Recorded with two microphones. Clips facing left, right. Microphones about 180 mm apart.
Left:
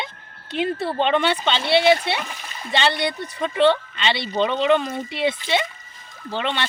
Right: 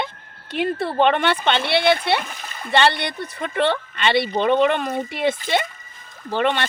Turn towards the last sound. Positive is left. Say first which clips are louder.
# right 5 dB
turn(degrees=-50)  # may be behind; listen again after turning